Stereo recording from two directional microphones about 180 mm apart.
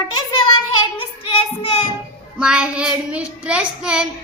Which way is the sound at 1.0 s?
30° left (ahead or behind).